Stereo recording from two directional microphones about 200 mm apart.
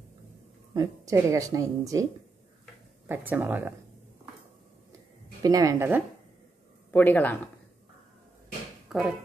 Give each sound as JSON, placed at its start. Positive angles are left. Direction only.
{"t": 0.7, "sound": "speech", "side_deg": -15}
{"t": 3.1, "sound": "speech", "side_deg": -10}
{"t": 5.4, "sound": "speech", "side_deg": -15}
{"t": 6.9, "sound": "speech", "side_deg": 10}
{"t": 8.8, "sound": "a sound", "side_deg": 0}